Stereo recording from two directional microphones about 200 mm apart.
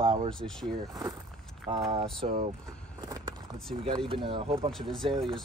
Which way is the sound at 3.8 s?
25° right (ahead or behind).